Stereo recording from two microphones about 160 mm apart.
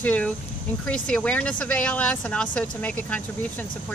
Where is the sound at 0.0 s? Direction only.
10° left (ahead or behind).